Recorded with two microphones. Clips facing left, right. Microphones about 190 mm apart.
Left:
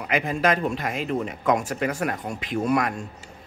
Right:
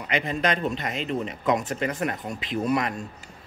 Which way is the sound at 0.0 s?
5° left (ahead or behind).